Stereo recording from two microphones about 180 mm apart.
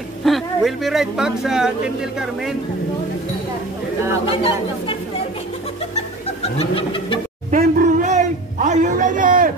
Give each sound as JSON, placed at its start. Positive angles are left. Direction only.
{"t": 0.2, "sound": "speech", "side_deg": 0}
{"t": 4.3, "sound": "bird", "side_deg": 30}
{"t": 6.4, "sound": "bird", "side_deg": 35}
{"t": 7.5, "sound": "a sound", "side_deg": -45}